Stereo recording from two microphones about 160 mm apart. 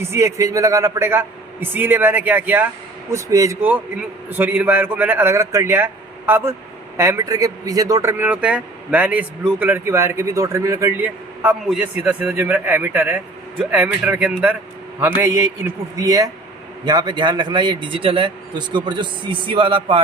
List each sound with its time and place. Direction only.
0.0 s a man's voice: 15° right (ahead or behind); by 20.0 s 30° right (ahead or behind)